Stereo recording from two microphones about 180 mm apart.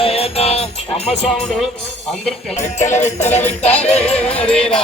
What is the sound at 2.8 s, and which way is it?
Music, 40° left (ahead or behind).